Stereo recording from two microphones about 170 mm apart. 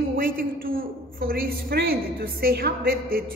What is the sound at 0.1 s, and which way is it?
A woman's voice, 55° right (ahead or behind).